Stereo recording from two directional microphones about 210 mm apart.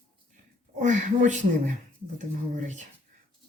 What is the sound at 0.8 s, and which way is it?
Speech, 35° right (ahead or behind).